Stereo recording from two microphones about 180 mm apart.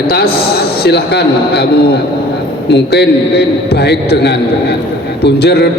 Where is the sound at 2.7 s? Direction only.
65° left (ahead or behind).